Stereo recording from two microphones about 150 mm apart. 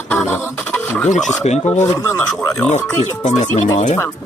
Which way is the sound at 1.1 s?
Centre (ahead or behind).